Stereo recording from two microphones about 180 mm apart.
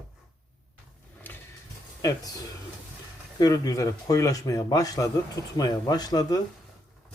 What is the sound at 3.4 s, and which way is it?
Speech, 20° left (ahead or behind).